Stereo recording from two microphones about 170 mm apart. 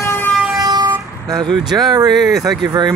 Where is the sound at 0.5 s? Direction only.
20° right (ahead or behind).